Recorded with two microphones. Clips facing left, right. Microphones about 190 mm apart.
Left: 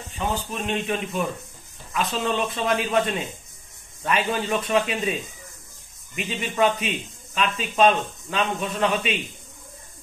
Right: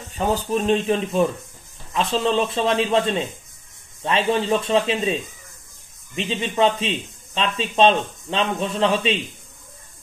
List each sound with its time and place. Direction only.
0.1 s a man's voice: 40° right (ahead or behind)